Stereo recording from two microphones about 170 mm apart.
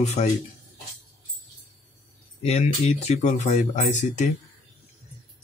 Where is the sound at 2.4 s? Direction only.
35° left (ahead or behind).